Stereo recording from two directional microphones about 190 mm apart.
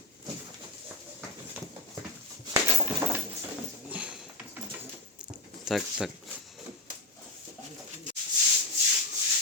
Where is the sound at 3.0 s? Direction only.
20° right (ahead or behind).